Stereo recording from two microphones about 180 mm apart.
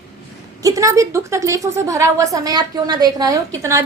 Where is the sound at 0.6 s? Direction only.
20° right (ahead or behind).